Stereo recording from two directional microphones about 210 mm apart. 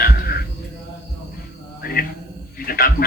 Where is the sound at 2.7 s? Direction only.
45° left (ahead or behind).